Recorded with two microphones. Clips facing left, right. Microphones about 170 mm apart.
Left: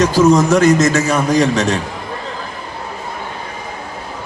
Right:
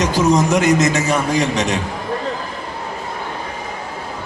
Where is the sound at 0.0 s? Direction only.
20° right (ahead or behind).